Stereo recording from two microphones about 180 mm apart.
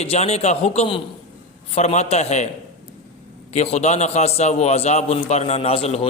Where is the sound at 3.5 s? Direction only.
35° left (ahead or behind).